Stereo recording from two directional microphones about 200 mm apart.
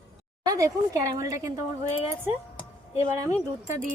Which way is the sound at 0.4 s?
15° right (ahead or behind).